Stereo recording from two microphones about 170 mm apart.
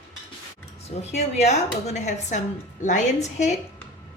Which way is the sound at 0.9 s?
40° left (ahead or behind).